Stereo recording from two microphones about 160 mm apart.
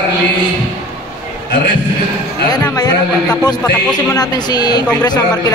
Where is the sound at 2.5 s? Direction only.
25° left (ahead or behind).